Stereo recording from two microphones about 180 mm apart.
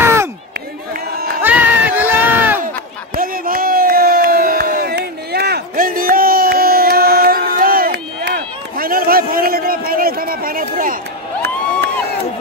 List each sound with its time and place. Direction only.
0.0 s a sound: 15° right (ahead or behind)
1.4 s crowd: 10° right (ahead or behind)
3.2 s crowd: 50° right (ahead or behind)